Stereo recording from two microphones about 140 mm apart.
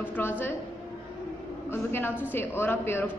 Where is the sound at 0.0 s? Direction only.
15° left (ahead or behind).